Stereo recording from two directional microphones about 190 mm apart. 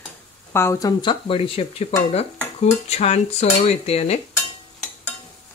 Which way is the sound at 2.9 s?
35° left (ahead or behind).